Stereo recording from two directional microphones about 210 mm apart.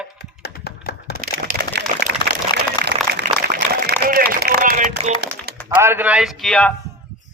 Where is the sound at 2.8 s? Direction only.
20° left (ahead or behind).